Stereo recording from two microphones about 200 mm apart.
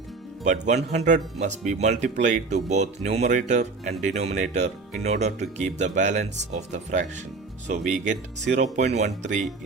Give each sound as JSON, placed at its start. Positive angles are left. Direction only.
{"t": 0.4, "sound": "speech", "side_deg": -35}